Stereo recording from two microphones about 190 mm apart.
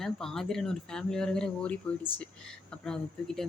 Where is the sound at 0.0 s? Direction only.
Centre (ahead or behind).